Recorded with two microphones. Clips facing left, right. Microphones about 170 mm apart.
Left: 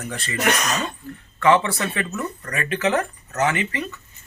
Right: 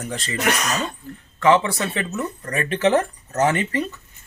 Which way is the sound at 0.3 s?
Centre (ahead or behind).